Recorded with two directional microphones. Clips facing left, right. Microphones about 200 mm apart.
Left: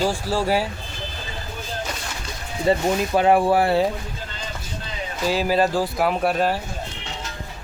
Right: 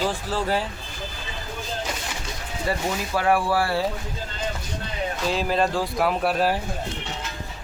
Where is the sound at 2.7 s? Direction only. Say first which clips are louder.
Left 7 dB; 20° left (ahead or behind).